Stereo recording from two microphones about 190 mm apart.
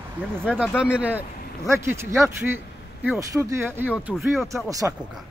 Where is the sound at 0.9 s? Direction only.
10° right (ahead or behind).